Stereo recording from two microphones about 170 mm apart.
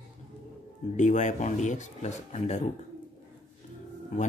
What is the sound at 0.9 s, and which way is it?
Speech, 45° left (ahead or behind).